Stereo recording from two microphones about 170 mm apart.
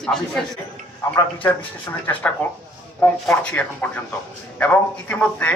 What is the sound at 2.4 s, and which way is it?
Speech, 10° left (ahead or behind).